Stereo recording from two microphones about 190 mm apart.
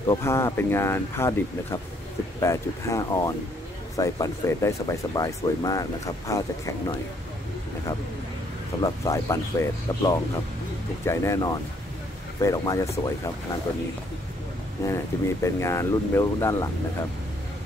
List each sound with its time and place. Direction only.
0.1 s speech: 15° left (ahead or behind)
8.8 s speech: 15° left (ahead or behind)
15.4 s speech: 15° left (ahead or behind)